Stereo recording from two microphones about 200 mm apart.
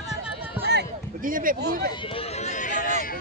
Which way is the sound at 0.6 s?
50° right (ahead or behind).